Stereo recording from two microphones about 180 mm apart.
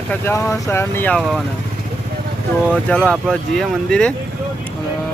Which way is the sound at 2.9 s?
Centre (ahead or behind).